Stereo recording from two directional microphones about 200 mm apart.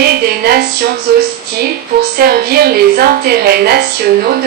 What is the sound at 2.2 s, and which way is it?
Speech, 50° right (ahead or behind).